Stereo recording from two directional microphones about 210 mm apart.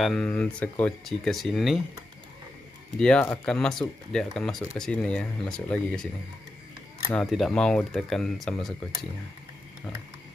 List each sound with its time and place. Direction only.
0.0 s speech: 5° left (ahead or behind)
3.0 s speech: 5° left (ahead or behind)
7.2 s speech: centre (ahead or behind)